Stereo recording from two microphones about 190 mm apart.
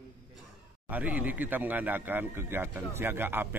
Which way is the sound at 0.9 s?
10° right (ahead or behind).